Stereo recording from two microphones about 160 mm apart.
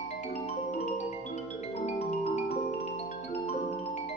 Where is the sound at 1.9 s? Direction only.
45° left (ahead or behind).